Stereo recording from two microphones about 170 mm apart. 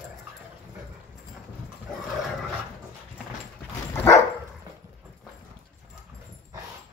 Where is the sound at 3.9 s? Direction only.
15° left (ahead or behind).